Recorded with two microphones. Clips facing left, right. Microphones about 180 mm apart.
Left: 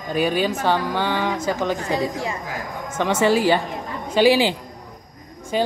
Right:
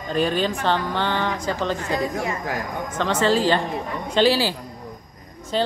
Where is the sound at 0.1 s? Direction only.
10° left (ahead or behind).